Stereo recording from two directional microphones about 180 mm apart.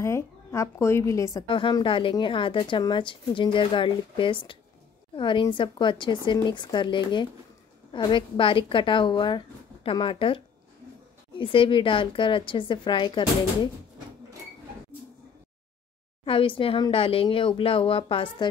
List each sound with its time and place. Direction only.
0.0 s a woman's voice: 15° left (ahead or behind)
16.3 s speech: 30° left (ahead or behind)